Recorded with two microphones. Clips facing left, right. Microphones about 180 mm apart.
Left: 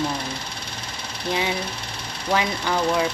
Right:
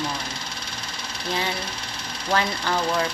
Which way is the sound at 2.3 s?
10° left (ahead or behind).